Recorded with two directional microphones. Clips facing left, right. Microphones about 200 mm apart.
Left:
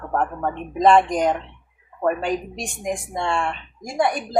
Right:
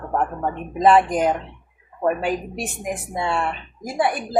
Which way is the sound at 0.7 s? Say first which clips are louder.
Even; 5° right (ahead or behind).